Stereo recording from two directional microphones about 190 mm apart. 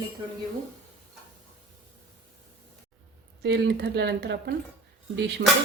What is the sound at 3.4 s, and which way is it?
Speech, 60° right (ahead or behind).